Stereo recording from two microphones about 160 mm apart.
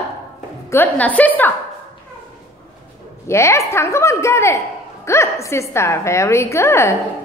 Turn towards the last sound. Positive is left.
turn(degrees=15)  # may be behind; listen again after turning